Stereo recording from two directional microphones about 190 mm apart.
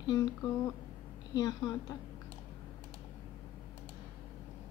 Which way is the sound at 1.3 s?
20° left (ahead or behind).